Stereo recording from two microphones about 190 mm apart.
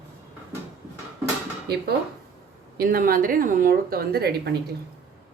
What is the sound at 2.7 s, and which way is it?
A woman's voice, 50° right (ahead or behind).